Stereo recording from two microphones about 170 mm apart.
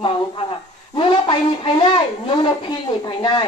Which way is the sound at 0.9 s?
30° left (ahead or behind).